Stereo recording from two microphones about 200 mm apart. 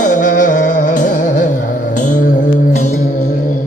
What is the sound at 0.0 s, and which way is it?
Music, 40° left (ahead or behind).